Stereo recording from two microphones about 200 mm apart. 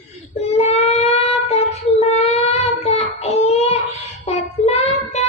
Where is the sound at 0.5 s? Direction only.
30° left (ahead or behind).